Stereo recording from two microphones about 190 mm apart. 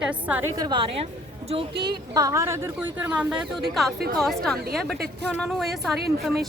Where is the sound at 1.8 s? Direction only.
20° right (ahead or behind).